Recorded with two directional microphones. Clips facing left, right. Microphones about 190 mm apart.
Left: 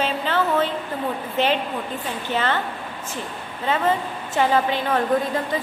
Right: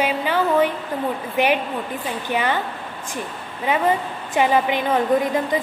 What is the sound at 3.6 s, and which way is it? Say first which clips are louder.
A woman's voice: right 2 dB; 15° right (ahead or behind).